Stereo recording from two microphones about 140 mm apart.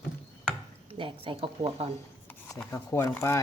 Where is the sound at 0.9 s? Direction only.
35° right (ahead or behind).